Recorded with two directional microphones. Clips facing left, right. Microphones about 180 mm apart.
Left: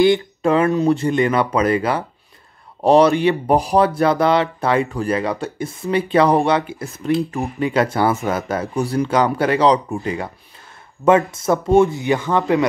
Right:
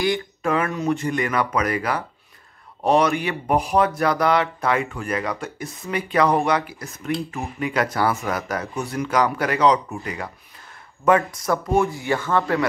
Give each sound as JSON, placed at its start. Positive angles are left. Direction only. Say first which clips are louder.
{"t": 0.4, "sound": "speech", "louder": "left 7 dB", "side_deg": 30}